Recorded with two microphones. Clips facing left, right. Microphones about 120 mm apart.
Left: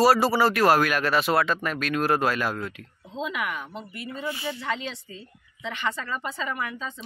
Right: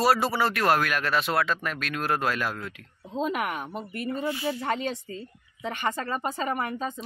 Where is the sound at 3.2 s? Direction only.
45° right (ahead or behind).